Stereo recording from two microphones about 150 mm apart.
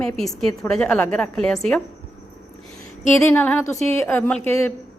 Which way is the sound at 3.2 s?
15° left (ahead or behind).